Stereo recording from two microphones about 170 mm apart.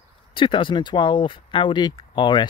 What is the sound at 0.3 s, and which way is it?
Speech, 30° left (ahead or behind).